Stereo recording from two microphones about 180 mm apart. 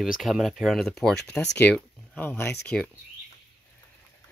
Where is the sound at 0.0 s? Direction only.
Centre (ahead or behind).